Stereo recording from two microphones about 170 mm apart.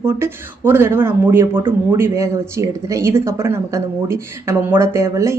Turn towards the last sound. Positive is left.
turn(degrees=-15)  # may be behind; listen again after turning